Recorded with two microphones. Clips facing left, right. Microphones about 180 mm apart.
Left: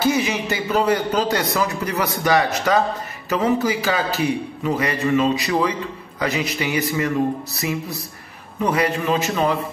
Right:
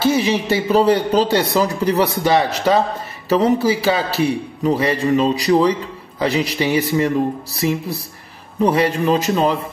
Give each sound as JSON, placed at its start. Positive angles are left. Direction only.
{"t": 0.0, "sound": "a man's voice", "side_deg": -25}